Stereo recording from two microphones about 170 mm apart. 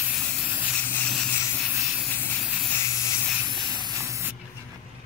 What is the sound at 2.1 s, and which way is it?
Steam, 10° left (ahead or behind).